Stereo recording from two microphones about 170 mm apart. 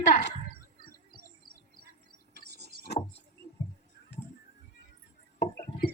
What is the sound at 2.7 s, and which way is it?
Vehicle, 60° left (ahead or behind).